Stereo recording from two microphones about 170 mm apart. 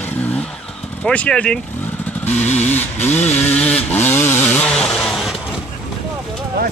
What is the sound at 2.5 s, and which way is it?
Vehicle, 40° left (ahead or behind).